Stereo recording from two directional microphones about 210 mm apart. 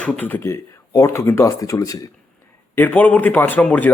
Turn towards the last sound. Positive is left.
turn(degrees=5)  # may be behind; listen again after turning